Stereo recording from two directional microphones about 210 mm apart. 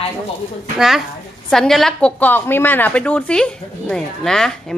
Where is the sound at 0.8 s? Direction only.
Centre (ahead or behind).